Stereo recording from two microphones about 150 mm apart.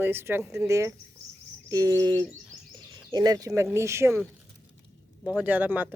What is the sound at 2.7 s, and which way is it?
Speech, 30° right (ahead or behind).